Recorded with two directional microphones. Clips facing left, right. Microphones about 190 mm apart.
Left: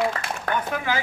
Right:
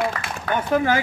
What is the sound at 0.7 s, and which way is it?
Speech, 45° right (ahead or behind).